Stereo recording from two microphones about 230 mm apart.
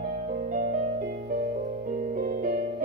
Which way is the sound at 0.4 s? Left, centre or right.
Right.